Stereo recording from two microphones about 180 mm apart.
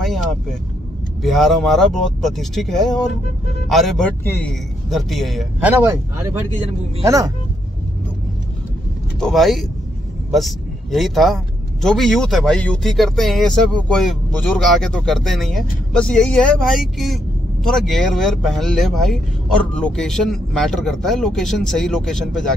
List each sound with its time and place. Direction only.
0.0 s a man's voice: centre (ahead or behind); by 7.3 s 20° right (ahead or behind)
9.2 s a man's voice: centre (ahead or behind)